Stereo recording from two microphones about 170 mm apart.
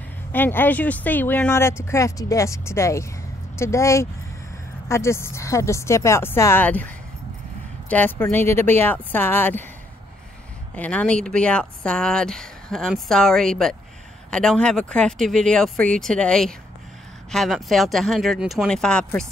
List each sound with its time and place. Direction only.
0.3 s speech: 10° left (ahead or behind)
7.9 s speech: 10° left (ahead or behind)
10.7 s speech: 10° left (ahead or behind)